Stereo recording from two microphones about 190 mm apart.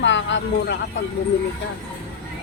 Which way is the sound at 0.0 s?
75° left (ahead or behind).